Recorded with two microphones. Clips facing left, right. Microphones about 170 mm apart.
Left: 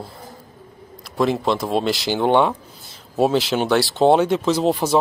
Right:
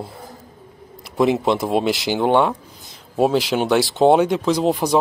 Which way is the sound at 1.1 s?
15° right (ahead or behind).